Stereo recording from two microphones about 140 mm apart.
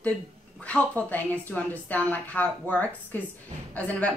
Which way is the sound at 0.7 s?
10° left (ahead or behind).